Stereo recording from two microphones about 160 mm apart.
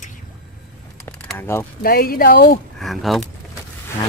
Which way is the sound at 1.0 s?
15° left (ahead or behind).